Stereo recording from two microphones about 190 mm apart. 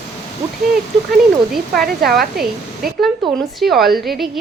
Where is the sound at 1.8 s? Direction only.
50° right (ahead or behind).